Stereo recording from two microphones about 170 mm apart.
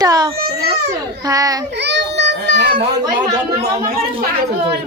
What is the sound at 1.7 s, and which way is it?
A child's voice, 90° right.